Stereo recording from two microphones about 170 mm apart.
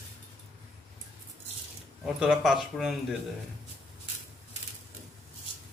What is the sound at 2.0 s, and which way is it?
A man's voice, 5° right (ahead or behind).